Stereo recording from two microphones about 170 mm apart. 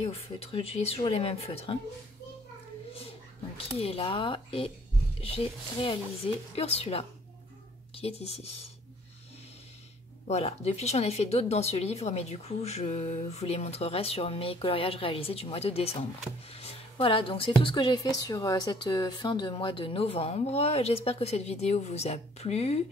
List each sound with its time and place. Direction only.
0.0 s speech: 35° left (ahead or behind)
3.5 s speech: 35° left (ahead or behind)
10.2 s speech: 40° left (ahead or behind)
16.5 s a sound: 35° left (ahead or behind)
17.6 s speech: 30° left (ahead or behind)